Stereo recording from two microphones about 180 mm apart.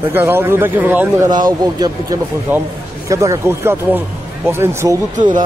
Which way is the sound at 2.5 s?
10° right (ahead or behind).